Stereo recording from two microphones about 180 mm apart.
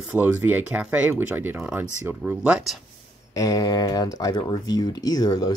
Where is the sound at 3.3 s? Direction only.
20° left (ahead or behind).